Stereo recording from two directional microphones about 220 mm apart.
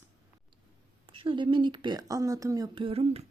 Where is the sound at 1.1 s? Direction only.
25° right (ahead or behind).